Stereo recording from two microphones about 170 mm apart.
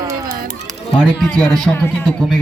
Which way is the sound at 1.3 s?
5° left (ahead or behind).